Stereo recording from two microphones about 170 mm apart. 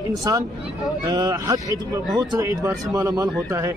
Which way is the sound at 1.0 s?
20° right (ahead or behind).